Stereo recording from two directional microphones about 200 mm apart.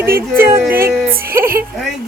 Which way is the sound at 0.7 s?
45° right (ahead or behind).